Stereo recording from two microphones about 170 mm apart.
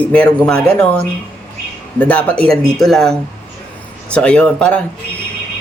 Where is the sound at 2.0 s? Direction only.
10° left (ahead or behind).